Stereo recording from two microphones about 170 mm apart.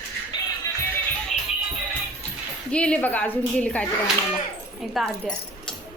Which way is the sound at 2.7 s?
5° left (ahead or behind).